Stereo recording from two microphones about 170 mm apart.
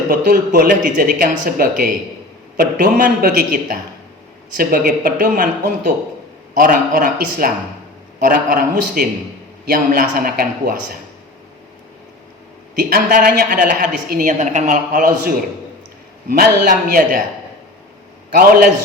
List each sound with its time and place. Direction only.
0.1 s speech: 60° right (ahead or behind)
6.6 s speech: 55° right (ahead or behind)
12.9 s speech: 65° right (ahead or behind)
16.4 s speech: 55° right (ahead or behind)
18.3 s speech: 60° right (ahead or behind)